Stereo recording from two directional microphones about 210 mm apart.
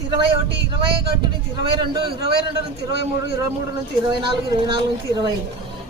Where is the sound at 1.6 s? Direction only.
20° right (ahead or behind).